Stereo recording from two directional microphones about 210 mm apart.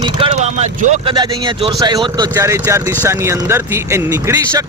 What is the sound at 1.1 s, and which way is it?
Speech, 20° right (ahead or behind).